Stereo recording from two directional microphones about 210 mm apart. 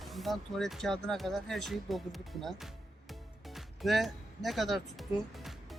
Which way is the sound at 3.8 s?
Centre (ahead or behind).